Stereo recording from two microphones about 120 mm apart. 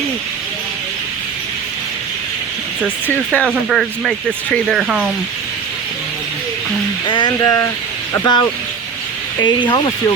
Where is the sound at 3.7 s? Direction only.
Centre (ahead or behind).